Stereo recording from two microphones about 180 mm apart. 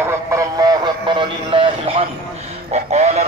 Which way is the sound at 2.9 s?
40° right (ahead or behind).